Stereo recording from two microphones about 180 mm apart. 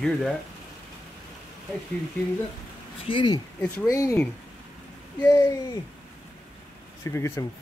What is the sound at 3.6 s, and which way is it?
Speech, 15° left (ahead or behind).